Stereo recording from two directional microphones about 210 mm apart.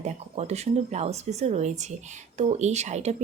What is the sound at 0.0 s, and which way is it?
Speech, 30° right (ahead or behind).